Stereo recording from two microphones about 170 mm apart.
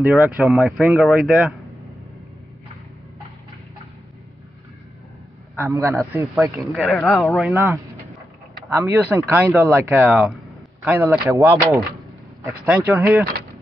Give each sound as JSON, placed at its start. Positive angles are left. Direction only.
{"t": 0.2, "sound": "speech", "side_deg": -10}
{"t": 5.6, "sound": "speech", "side_deg": -15}
{"t": 6.7, "sound": "speech", "side_deg": 0}
{"t": 7.5, "sound": "speech", "side_deg": -15}
{"t": 12.8, "sound": "speech", "side_deg": -10}